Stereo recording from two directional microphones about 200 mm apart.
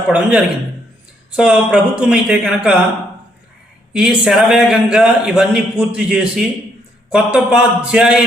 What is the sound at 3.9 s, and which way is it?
A man's voice, 5° right (ahead or behind).